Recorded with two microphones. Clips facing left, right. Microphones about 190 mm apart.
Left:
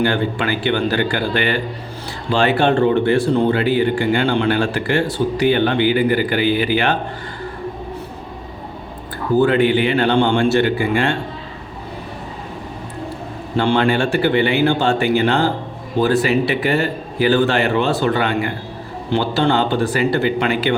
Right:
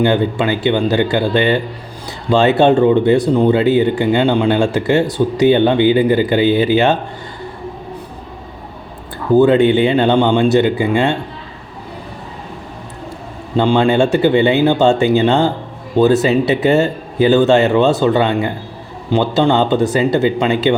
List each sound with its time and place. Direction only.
0.0 s speech: 20° right (ahead or behind)
9.4 s speech: 25° right (ahead or behind)
13.6 s speech: 20° right (ahead or behind)